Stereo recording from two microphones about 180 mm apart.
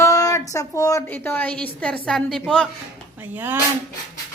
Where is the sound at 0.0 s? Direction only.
20° left (ahead or behind).